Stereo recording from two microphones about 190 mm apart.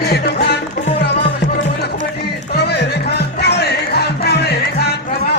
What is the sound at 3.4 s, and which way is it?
Music, 60° left (ahead or behind).